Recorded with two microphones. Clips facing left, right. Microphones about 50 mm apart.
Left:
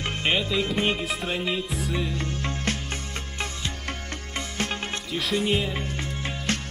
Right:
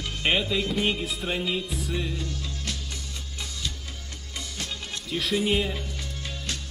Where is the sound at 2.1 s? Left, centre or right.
Left.